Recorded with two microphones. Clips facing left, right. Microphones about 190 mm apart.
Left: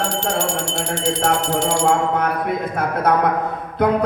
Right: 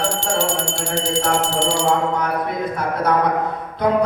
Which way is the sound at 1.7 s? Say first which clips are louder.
Left 2 dB; 50° left (ahead or behind).